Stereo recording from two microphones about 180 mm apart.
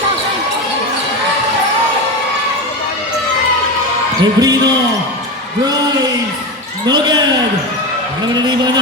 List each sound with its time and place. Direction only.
4.2 s speech: 20° right (ahead or behind)
6.8 s speech: 20° right (ahead or behind)
8.3 s speech: 25° right (ahead or behind)